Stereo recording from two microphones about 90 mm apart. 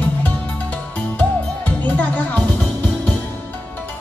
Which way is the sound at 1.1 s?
20° left (ahead or behind).